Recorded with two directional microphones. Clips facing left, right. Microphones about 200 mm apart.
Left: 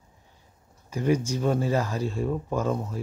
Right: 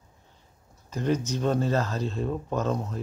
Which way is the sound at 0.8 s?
10° left (ahead or behind).